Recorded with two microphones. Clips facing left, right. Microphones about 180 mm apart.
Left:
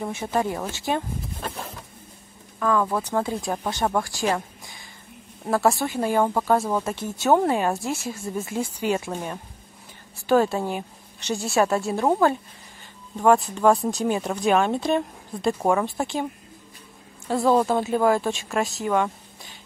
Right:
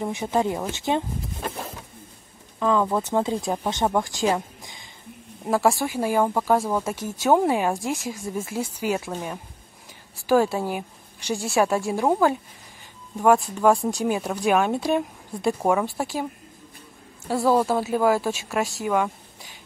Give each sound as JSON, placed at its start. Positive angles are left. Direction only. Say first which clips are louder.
{"t": 0.0, "sound": "speech", "louder": "right 2 dB", "side_deg": -15}
{"t": 2.6, "sound": "a woman's voice", "louder": "right 1 dB", "side_deg": -20}
{"t": 17.3, "sound": "speech", "louder": "left 1 dB", "side_deg": -5}